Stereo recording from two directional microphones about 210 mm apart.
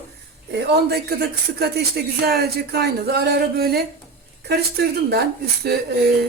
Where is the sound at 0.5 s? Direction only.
50° right (ahead or behind).